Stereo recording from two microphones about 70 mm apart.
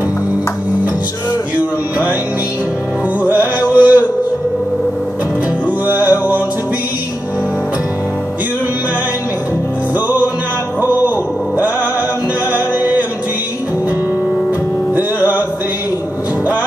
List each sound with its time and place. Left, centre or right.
3.7 s a sound: right
5.9 s music: right
9.9 s music: right
10.8 s a sound: right
12.5 s music: right
15.0 s music: right